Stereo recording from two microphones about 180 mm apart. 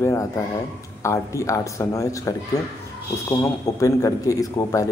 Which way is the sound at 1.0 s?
15° left (ahead or behind).